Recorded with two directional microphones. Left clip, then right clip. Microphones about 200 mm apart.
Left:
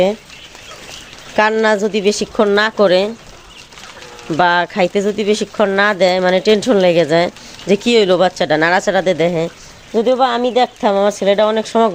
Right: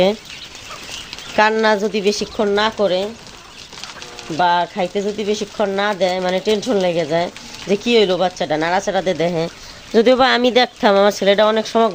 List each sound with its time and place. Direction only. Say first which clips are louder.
1.4 s a woman's voice: left 1 dB; 10° left (ahead or behind); by 3.1 s 30° left (ahead or behind)
4.4 s speech: left 3 dB; 25° left (ahead or behind)
9.9 s speech: right 1 dB; 10° right (ahead or behind); by 11.9 s 10° left (ahead or behind)